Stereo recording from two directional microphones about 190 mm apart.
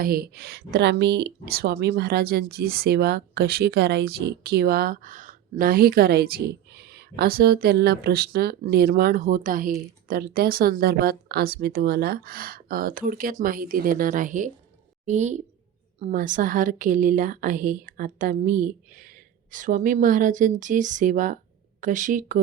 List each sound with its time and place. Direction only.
0.0 s a woman's voice: 50° right (ahead or behind)